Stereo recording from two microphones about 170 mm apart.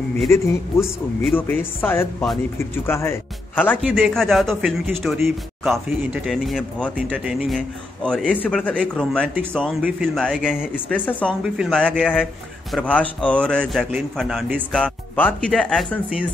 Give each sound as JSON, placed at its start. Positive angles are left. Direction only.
{"t": 0.3, "sound": "speech", "side_deg": 15}
{"t": 10.9, "sound": "speech", "side_deg": 10}
{"t": 11.4, "sound": "speech", "side_deg": -5}
{"t": 12.7, "sound": "speech", "side_deg": 10}